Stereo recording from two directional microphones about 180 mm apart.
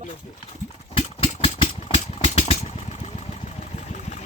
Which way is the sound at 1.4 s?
30° left (ahead or behind).